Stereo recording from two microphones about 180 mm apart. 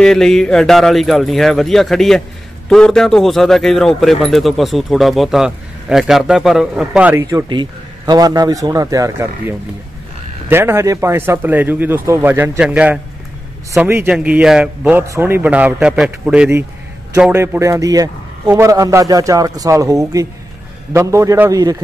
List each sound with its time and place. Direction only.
0.0 s speech: centre (ahead or behind)
7.2 s a man's voice: 25° right (ahead or behind)
10.5 s a man's voice: 15° right (ahead or behind)